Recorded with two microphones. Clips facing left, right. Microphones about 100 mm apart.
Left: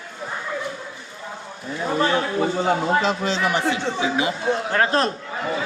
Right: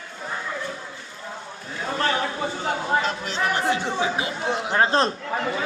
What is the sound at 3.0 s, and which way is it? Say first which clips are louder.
Speech: left 4 dB; 90° left.